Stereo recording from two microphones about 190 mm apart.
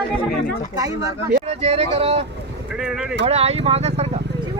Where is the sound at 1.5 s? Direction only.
30° right (ahead or behind).